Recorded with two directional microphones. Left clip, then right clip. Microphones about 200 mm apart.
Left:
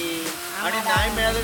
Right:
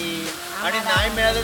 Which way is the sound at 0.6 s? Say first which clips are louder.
Right 1 dB; 5° right (ahead or behind).